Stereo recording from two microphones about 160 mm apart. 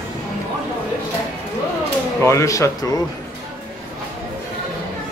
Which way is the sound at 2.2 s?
15° left (ahead or behind).